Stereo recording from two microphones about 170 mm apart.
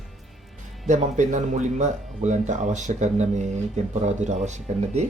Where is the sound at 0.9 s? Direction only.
45° right (ahead or behind).